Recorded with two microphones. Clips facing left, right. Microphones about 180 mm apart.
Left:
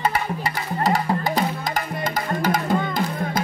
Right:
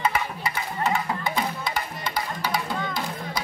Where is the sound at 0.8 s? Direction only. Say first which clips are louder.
Left 5 dB; 35° left (ahead or behind).